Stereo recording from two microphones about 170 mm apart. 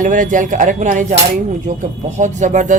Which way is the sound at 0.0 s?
50° right (ahead or behind).